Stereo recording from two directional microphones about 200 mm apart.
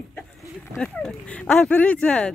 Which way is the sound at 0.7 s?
5° left (ahead or behind).